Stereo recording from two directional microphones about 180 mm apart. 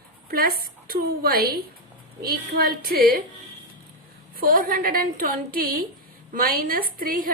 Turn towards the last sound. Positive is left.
turn(degrees=-50)  # may be behind; listen again after turning